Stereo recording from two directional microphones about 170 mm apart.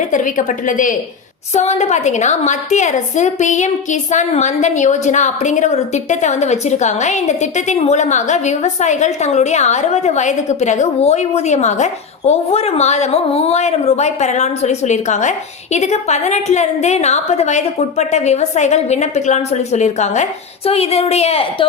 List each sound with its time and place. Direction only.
0.1 s a woman's voice: 50° left (ahead or behind)